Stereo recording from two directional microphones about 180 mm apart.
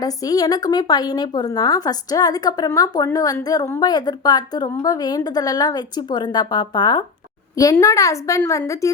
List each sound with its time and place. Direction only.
0.0 s a woman's voice: 20° left (ahead or behind)